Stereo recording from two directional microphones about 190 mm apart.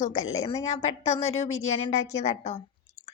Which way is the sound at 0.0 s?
40° left (ahead or behind).